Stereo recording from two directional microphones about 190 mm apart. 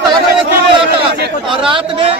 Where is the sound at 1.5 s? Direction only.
25° right (ahead or behind).